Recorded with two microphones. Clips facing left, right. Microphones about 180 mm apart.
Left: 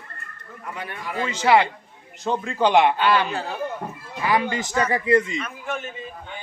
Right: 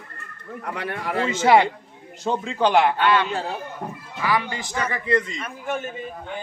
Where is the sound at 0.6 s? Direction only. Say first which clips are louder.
Right 4 dB; 70° right (ahead or behind).